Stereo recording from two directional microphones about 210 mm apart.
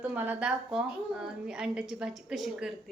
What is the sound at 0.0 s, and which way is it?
A woman's voice, 10° right (ahead or behind).